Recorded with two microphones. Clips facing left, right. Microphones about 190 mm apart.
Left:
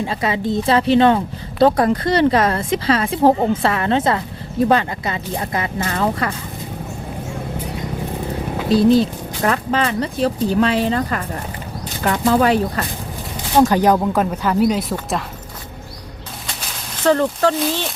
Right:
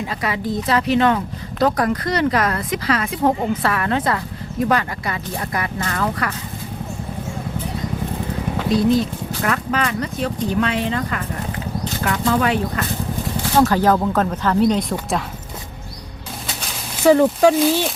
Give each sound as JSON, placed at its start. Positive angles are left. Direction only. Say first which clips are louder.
{"t": 0.0, "sound": "speech", "louder": "left 3 dB", "side_deg": 25}
{"t": 8.7, "sound": "speech", "louder": "left 4 dB", "side_deg": 30}
{"t": 12.2, "sound": "speech", "louder": "left 4 dB", "side_deg": 35}
{"t": 13.5, "sound": "speech", "louder": "left 2 dB", "side_deg": 15}
{"t": 17.0, "sound": "speech", "louder": "right 3 dB", "side_deg": -10}